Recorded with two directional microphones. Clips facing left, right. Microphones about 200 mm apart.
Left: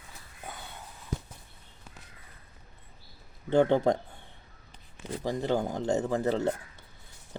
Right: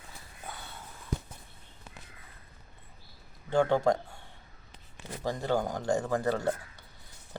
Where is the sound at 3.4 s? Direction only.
20° left (ahead or behind).